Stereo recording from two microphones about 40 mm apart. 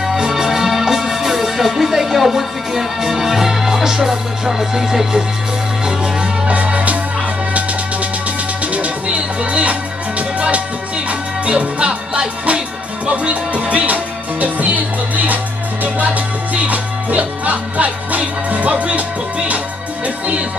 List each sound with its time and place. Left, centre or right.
0.0 s music: centre
6.4 s music: right
8.7 s music: right
16.5 s music: right